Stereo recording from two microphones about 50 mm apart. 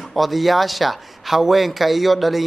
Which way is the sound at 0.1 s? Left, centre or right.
Centre.